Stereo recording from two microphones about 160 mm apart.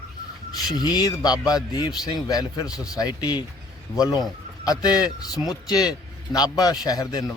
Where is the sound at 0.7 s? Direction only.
25° left (ahead or behind).